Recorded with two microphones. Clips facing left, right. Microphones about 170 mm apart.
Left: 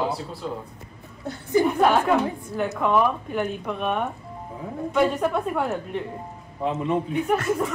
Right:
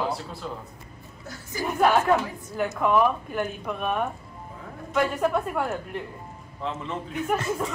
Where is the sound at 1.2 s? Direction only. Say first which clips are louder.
Left 16 dB; 60° left (ahead or behind).